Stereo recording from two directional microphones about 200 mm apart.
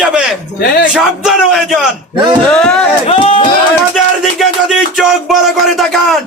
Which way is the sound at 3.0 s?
25° left (ahead or behind).